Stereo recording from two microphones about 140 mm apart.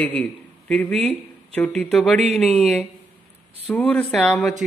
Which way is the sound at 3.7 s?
10° left (ahead or behind).